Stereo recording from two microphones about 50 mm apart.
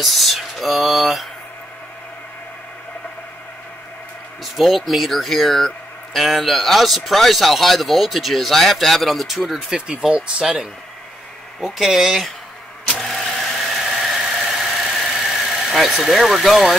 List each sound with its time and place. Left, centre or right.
0.0 s speech: centre
4.6 s speech: centre
9.7 s speech: centre
12.9 s vehicle: centre